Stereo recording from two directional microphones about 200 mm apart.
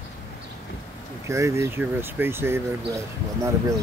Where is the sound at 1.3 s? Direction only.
15° right (ahead or behind).